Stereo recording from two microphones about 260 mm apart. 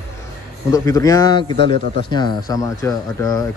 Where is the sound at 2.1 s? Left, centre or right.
Centre.